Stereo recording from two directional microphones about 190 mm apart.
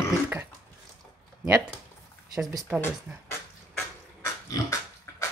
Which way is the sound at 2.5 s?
15° right (ahead or behind).